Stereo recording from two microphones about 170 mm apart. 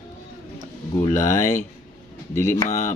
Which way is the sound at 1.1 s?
20° left (ahead or behind).